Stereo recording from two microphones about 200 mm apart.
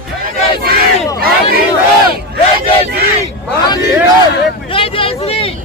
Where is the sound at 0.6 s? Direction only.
50° right (ahead or behind).